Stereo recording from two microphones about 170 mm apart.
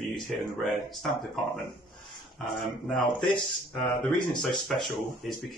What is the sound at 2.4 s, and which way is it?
Speech, centre (ahead or behind).